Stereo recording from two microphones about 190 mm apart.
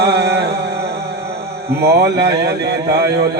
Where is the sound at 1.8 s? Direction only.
60° right (ahead or behind).